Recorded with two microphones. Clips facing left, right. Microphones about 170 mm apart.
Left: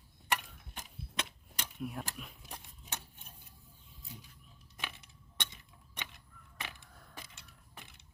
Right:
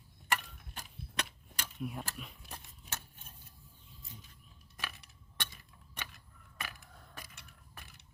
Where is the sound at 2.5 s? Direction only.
15° left (ahead or behind).